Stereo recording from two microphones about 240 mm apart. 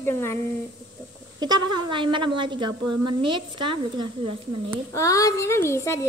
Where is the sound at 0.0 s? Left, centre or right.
Centre.